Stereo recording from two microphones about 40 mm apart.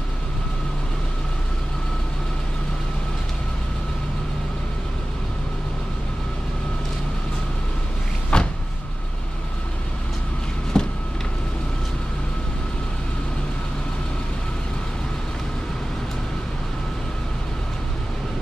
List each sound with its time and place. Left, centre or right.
8.3 s vehicle: left
10.8 s vehicle: left